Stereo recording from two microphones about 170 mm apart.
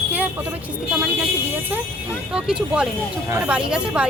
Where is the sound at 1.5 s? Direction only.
10° right (ahead or behind).